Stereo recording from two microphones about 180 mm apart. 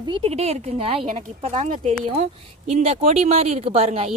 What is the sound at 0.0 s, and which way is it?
Speech, 30° right (ahead or behind).